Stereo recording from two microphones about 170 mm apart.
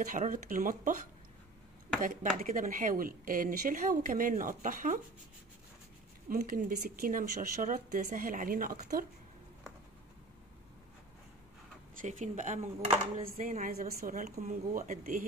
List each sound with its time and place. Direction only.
0.1 s speech: 50° right (ahead or behind)
2.0 s speech: 50° right (ahead or behind)
6.2 s speech: 55° right (ahead or behind)
12.0 s speech: 45° right (ahead or behind)
14.3 s speech: 45° right (ahead or behind)